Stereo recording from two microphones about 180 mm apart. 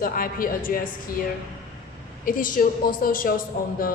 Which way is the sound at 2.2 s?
50° left (ahead or behind).